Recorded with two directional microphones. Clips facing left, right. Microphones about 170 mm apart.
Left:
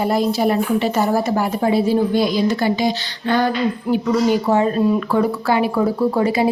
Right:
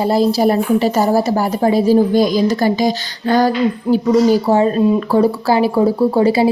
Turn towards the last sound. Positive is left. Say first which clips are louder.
# right 4 dB
turn(degrees=-30)  # may be behind; listen again after turning